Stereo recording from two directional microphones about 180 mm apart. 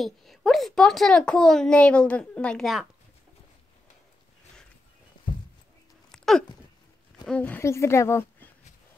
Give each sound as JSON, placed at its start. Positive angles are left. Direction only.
{"t": 0.0, "sound": "a child's voice", "side_deg": 0}
{"t": 6.1, "sound": "dog", "side_deg": 0}
{"t": 7.2, "sound": "speech", "side_deg": 10}